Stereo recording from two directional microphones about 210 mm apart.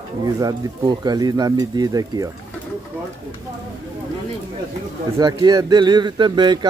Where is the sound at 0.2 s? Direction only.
20° right (ahead or behind).